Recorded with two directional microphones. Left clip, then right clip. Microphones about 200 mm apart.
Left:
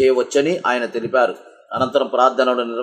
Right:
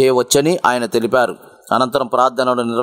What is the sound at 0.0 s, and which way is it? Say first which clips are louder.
Speech: right 2 dB; 60° right (ahead or behind).